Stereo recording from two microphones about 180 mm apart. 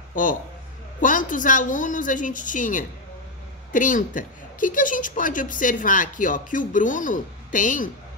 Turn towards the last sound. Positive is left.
turn(degrees=45)  # may be behind; listen again after turning